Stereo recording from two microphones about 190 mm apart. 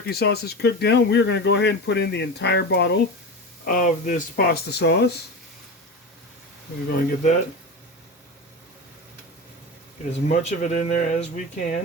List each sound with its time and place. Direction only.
0.0 s speech: 55° left (ahead or behind)
3.6 s speech: 45° left (ahead or behind); by 5.1 s 60° left (ahead or behind)
6.8 s speech: 45° left (ahead or behind)
10.1 s speech: 35° left (ahead or behind)